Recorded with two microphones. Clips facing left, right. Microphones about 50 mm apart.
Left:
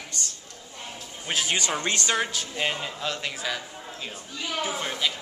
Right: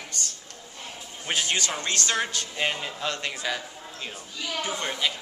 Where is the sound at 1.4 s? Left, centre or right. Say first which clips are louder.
Left 2 dB; centre.